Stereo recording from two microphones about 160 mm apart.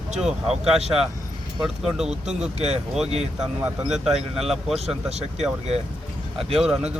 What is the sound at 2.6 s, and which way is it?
Speech, 40° right (ahead or behind).